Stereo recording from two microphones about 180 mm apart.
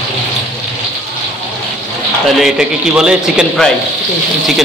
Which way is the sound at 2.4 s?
5° right (ahead or behind).